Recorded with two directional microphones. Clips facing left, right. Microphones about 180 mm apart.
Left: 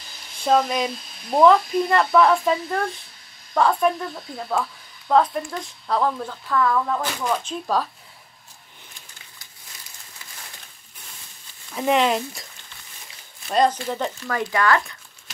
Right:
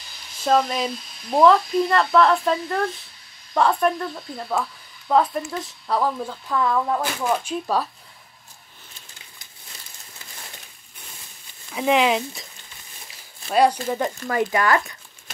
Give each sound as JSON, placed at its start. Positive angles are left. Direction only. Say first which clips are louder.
{"t": 0.4, "sound": "speech", "louder": "even", "side_deg": 0}
{"t": 11.7, "sound": "speech", "louder": "right 1 dB", "side_deg": -5}
{"t": 13.5, "sound": "speech", "louder": "right 2 dB", "side_deg": -10}
{"t": 14.2, "sound": "speech", "louder": "even", "side_deg": -20}